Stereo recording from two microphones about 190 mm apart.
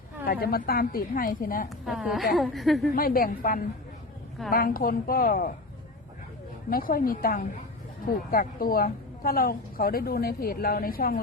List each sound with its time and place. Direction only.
0.3 s a woman's voice: 50° left (ahead or behind)
1.8 s a woman's voice: centre (ahead or behind)
2.9 s a woman's voice: 50° left (ahead or behind)
6.7 s a woman's voice: 50° left (ahead or behind)